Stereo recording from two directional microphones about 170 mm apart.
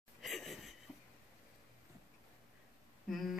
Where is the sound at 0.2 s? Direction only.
Centre (ahead or behind).